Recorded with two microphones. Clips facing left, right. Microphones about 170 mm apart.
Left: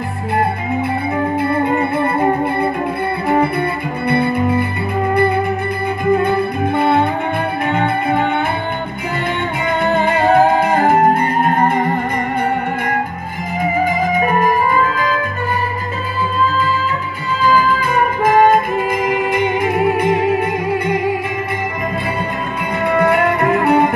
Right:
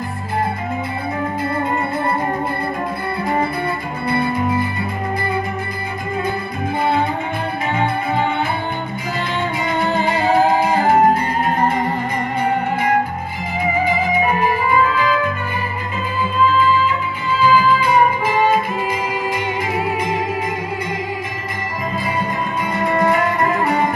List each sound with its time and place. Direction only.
1.4 s music: 65° left (ahead or behind)
4.1 s music: 65° left (ahead or behind)
6.2 s music: 60° left (ahead or behind)
9.8 s music: 60° left (ahead or behind)
13.8 s music: 45° left (ahead or behind)
17.4 s music: 45° left (ahead or behind)
22.8 s music: 65° left (ahead or behind)